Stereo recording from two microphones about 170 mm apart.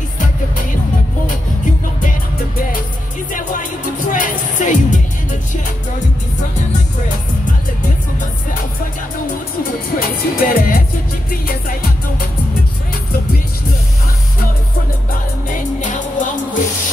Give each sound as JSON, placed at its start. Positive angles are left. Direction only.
{"t": 2.0, "sound": "music", "side_deg": 55}
{"t": 4.1, "sound": "music", "side_deg": 50}
{"t": 9.9, "sound": "music", "side_deg": 60}
{"t": 15.5, "sound": "music", "side_deg": 50}